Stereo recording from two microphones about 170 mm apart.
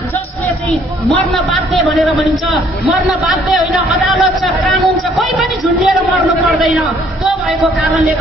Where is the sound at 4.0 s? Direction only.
Centre (ahead or behind).